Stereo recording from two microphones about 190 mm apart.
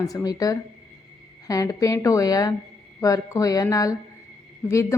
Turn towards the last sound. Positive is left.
turn(degrees=15)  # may be behind; listen again after turning